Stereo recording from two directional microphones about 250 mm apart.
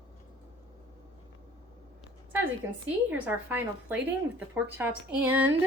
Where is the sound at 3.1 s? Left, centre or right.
Centre.